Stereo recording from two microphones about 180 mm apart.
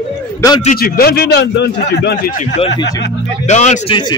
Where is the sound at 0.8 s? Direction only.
55° left (ahead or behind).